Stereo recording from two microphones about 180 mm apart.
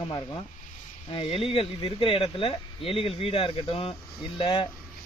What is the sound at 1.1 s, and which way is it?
Speech, 30° left (ahead or behind).